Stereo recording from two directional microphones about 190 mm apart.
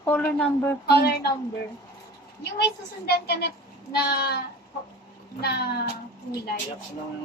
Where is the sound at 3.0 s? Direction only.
60° left (ahead or behind).